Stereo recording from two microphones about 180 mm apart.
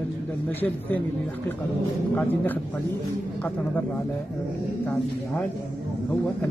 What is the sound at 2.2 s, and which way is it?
Speech, 10° left (ahead or behind).